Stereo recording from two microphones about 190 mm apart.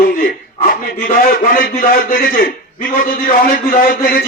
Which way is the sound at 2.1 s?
45° left (ahead or behind).